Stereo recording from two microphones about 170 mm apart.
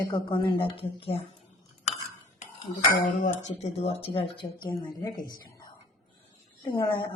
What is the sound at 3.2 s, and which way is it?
A woman's voice, 40° left (ahead or behind).